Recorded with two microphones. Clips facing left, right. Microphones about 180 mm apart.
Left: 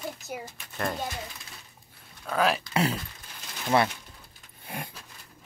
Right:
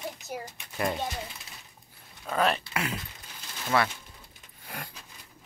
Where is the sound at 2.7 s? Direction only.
35° left (ahead or behind).